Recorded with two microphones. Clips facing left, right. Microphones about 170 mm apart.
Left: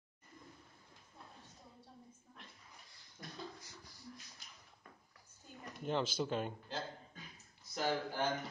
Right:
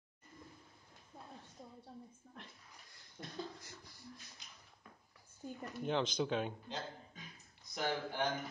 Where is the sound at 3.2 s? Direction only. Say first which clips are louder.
Right 2 dB; 25° right (ahead or behind).